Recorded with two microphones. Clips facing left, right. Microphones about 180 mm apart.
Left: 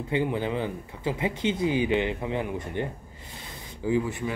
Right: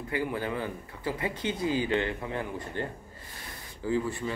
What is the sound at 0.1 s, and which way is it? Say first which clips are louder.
Speech: left 4 dB; 20° left (ahead or behind).